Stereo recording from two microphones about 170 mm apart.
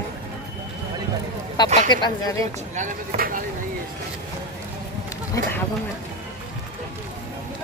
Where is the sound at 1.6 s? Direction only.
25° left (ahead or behind).